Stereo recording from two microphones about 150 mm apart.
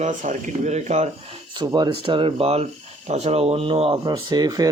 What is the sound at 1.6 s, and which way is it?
Speech, 30° right (ahead or behind).